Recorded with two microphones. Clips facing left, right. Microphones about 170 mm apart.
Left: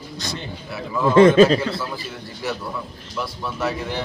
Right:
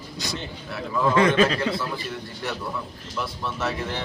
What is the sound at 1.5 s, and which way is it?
Speech, centre (ahead or behind).